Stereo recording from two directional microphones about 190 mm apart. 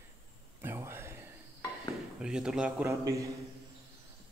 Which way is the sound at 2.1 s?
5° right (ahead or behind).